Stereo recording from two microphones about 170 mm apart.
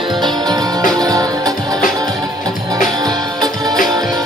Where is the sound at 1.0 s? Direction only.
20° right (ahead or behind).